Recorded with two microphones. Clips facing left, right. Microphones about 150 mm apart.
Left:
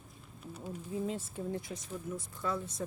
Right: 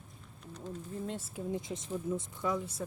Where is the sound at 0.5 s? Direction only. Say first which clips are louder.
Left 2 dB; 10° left (ahead or behind).